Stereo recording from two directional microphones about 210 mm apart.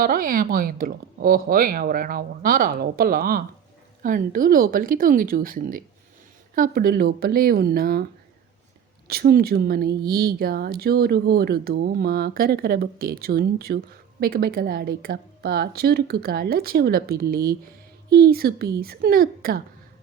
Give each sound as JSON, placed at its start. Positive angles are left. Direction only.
{"t": 0.0, "sound": "speech", "side_deg": -40}
{"t": 9.0, "sound": "speech", "side_deg": -45}